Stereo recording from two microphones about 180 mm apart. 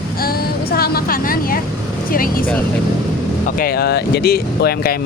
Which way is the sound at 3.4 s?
55° left (ahead or behind).